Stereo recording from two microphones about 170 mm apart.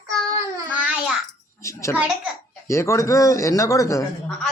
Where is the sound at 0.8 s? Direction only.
10° right (ahead or behind).